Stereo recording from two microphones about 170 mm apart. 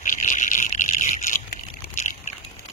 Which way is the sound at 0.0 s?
50° left (ahead or behind).